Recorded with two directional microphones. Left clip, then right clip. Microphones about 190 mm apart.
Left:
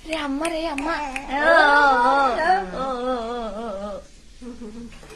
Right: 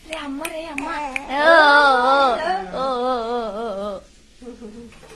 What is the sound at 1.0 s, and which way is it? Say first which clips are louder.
Speech: right 5 dB; 35° right (ahead or behind).